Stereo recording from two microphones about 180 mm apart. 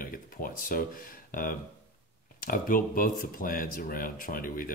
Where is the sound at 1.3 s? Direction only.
50° left (ahead or behind).